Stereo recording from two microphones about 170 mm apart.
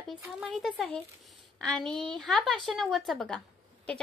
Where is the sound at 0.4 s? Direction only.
Centre (ahead or behind).